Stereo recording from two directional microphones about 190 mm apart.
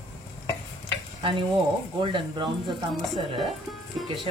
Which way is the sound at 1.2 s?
25° right (ahead or behind).